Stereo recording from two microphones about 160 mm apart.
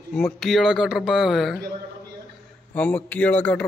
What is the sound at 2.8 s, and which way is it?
Speech, 10° left (ahead or behind).